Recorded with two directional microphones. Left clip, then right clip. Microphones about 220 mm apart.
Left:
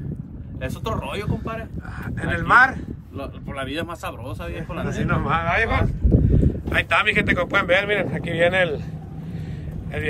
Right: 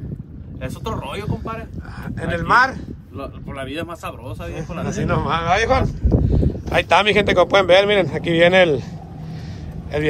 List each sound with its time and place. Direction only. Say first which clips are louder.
0.6 s speech: even; centre (ahead or behind); by 8.8 s 25° right (ahead or behind)